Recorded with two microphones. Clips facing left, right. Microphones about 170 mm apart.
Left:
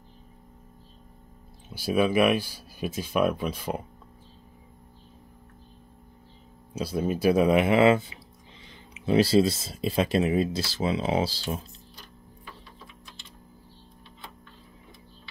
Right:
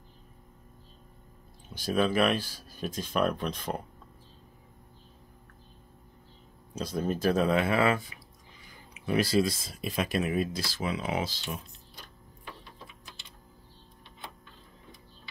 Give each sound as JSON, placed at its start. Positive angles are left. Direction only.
{"t": 1.7, "sound": "speech", "side_deg": 10}
{"t": 6.7, "sound": "speech", "side_deg": 10}